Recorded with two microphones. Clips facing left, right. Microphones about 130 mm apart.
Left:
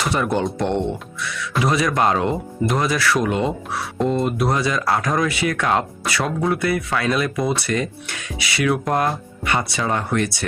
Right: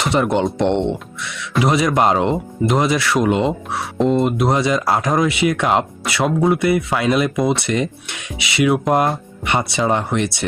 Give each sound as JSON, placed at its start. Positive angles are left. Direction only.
{"t": 0.0, "sound": "speech", "side_deg": -20}